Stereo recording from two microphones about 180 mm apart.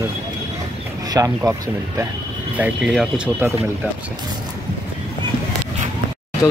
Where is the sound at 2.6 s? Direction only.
5° right (ahead or behind).